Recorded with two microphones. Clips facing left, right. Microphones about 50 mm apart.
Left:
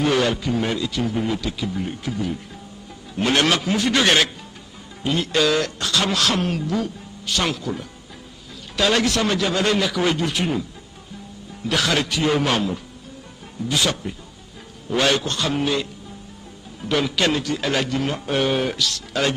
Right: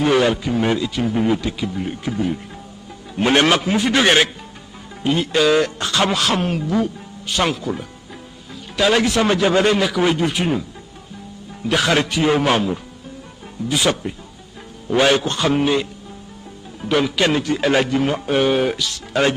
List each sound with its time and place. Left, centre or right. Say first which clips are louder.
0.0 s a man's voice: right 3 dB; centre
6.1 s a man's voice: right 2 dB; centre
9.7 s a man's voice: right 3 dB; centre
11.6 s a man's voice: right 4 dB; centre
13.6 s a man's voice: right 3 dB; centre